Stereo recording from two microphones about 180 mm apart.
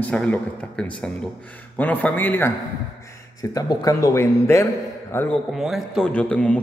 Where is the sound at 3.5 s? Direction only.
20° left (ahead or behind).